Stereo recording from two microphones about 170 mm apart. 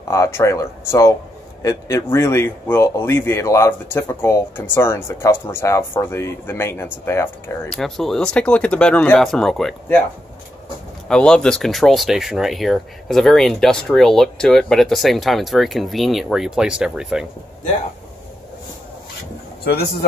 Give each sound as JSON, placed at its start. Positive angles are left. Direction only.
{"t": 0.1, "sound": "speech", "side_deg": 15}
{"t": 7.7, "sound": "speech", "side_deg": 0}
{"t": 11.1, "sound": "speech", "side_deg": 5}